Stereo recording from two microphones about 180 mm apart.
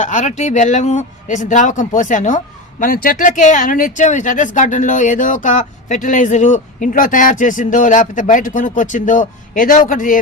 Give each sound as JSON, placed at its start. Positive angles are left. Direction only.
{"t": 0.0, "sound": "speech", "side_deg": 40}